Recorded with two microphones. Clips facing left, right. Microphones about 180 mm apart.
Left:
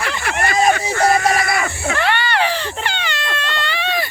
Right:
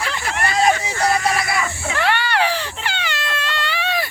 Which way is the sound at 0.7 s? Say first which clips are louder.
Left 3 dB; 50° left (ahead or behind).